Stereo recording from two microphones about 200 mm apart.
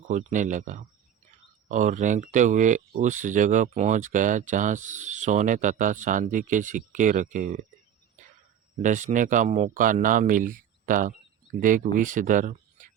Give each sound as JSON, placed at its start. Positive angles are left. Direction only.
{"t": 0.1, "sound": "speech", "side_deg": -40}
{"t": 8.8, "sound": "speech", "side_deg": -40}